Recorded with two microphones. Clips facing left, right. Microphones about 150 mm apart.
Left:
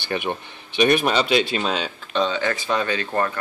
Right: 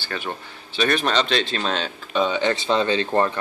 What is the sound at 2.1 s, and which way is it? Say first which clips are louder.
Speech: right 1 dB; 10° right (ahead or behind).